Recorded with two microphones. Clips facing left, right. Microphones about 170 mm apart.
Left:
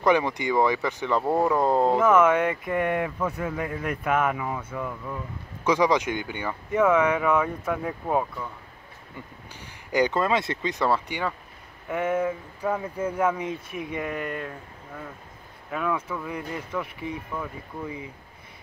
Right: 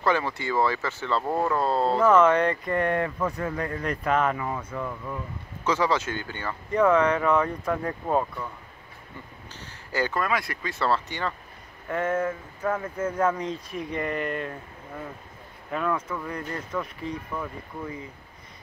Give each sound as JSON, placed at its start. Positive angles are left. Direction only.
{"t": 0.0, "sound": "speech", "side_deg": 15}
{"t": 5.7, "sound": "speech", "side_deg": 15}
{"t": 9.6, "sound": "speech", "side_deg": 15}